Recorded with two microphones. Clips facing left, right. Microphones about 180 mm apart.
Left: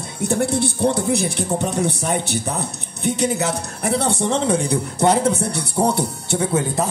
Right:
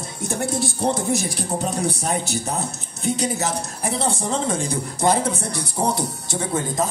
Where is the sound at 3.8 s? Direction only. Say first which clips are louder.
Left 5 dB; 65° left (ahead or behind).